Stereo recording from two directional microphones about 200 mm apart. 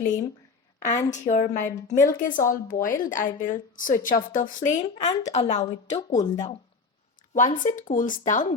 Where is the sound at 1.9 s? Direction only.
40° left (ahead or behind).